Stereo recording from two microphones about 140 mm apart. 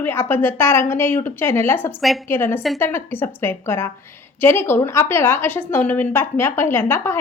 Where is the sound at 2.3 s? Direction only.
15° left (ahead or behind).